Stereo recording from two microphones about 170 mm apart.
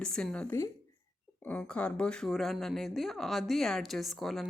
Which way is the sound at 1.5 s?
5° left (ahead or behind).